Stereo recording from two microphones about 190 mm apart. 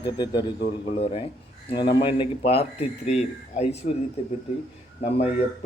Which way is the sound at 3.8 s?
50° left (ahead or behind).